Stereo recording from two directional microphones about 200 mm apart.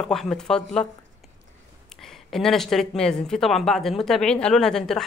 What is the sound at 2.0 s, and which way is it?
Speech, centre (ahead or behind).